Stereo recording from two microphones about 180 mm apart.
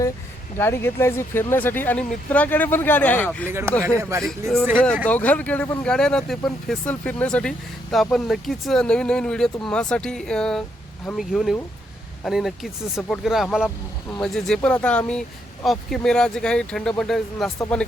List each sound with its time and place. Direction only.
0.6 s speech: 15° left (ahead or behind)
3.4 s speech: 15° right (ahead or behind)
4.2 s speech: 5° left (ahead or behind)